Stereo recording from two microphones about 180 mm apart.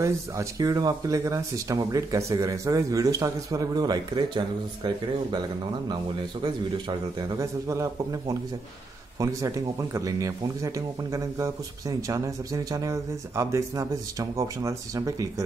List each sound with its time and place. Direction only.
0.0 s speech: 20° right (ahead or behind)
7.2 s speech: 15° right (ahead or behind)